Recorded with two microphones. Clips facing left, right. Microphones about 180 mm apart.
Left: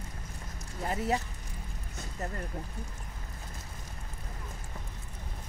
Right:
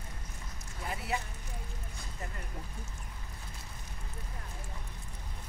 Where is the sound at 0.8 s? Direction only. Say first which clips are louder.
Left 6 dB; 40° left (ahead or behind).